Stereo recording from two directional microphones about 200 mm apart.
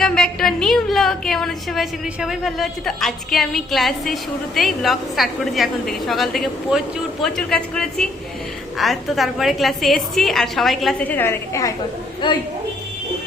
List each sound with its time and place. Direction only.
0.0 s a woman's voice: 5° left (ahead or behind)
12.2 s speech: 25° left (ahead or behind)